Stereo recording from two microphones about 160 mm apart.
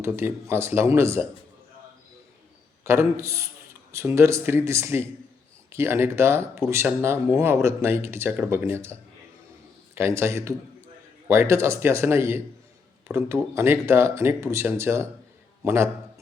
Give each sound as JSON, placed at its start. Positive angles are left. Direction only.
{"t": 0.0, "sound": "speech", "side_deg": -15}
{"t": 2.8, "sound": "a man's voice", "side_deg": -15}